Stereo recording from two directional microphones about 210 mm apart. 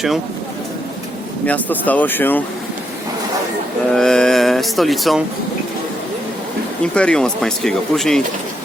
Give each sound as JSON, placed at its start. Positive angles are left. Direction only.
{"t": 1.5, "sound": "speech", "side_deg": 5}
{"t": 3.9, "sound": "speech", "side_deg": 0}
{"t": 6.9, "sound": "speech", "side_deg": 5}